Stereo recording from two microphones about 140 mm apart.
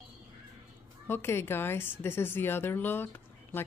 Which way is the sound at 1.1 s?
15° left (ahead or behind).